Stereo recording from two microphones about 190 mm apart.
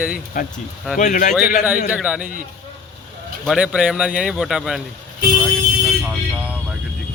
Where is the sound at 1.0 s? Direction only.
40° left (ahead or behind).